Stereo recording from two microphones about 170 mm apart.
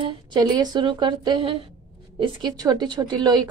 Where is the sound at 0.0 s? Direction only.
25° right (ahead or behind).